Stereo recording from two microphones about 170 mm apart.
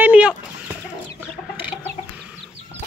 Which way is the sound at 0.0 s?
5° right (ahead or behind).